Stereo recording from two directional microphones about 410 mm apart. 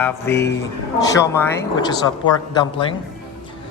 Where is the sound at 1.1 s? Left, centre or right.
Centre.